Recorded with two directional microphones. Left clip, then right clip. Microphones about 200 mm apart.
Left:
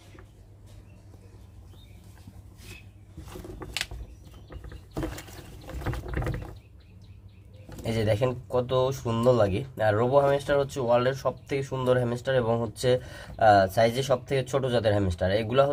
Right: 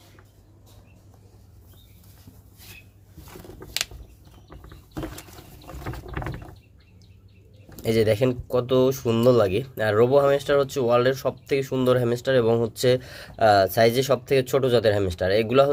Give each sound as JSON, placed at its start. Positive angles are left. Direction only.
{"t": 7.8, "sound": "speech", "side_deg": -40}